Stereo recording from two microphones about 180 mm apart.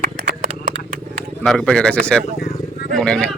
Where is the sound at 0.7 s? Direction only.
35° right (ahead or behind).